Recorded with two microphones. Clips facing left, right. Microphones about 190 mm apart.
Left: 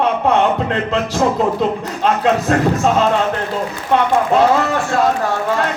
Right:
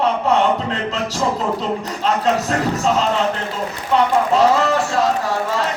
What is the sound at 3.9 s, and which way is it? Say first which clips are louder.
Speech: left 1 dB; 55° left (ahead or behind).